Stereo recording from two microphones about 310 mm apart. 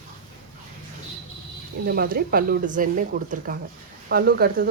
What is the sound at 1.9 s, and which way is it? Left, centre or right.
Speech, right.